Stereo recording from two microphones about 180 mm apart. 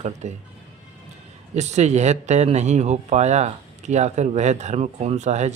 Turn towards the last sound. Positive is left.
turn(degrees=-40)  # may be behind; listen again after turning